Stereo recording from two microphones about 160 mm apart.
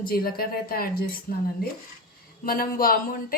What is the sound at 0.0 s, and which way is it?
Speech, 70° left (ahead or behind).